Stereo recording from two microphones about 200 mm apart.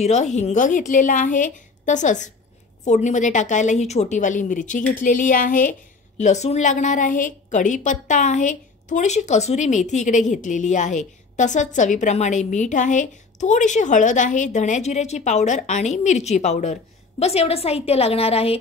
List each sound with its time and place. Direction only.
0.0 s a woman's voice: 35° left (ahead or behind)